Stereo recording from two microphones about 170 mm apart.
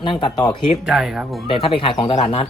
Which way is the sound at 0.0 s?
30° left (ahead or behind).